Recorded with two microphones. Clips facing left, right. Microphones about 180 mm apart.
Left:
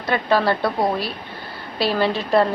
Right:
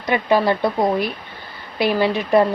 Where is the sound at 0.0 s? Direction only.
15° right (ahead or behind).